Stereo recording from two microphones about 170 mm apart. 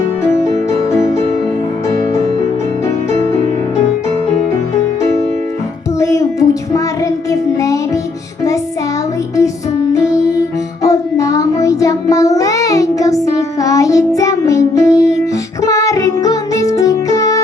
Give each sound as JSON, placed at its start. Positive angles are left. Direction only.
{"t": 6.0, "sound": "child singing", "side_deg": 15}
{"t": 9.9, "sound": "music", "side_deg": 20}
{"t": 10.8, "sound": "child singing", "side_deg": 20}
{"t": 13.2, "sound": "music", "side_deg": 20}